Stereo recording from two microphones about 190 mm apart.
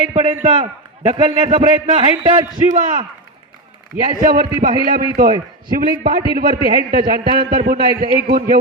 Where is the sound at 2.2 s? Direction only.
20° right (ahead or behind).